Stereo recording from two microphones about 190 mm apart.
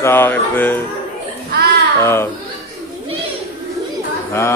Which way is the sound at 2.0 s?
15° left (ahead or behind).